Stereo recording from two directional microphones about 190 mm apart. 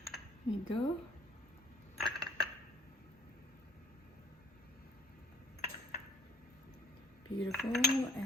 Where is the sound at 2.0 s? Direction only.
Centre (ahead or behind).